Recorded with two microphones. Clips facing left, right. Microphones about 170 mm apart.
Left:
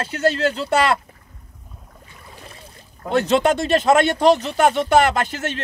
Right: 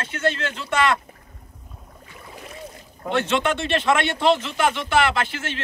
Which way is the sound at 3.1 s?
40° left (ahead or behind).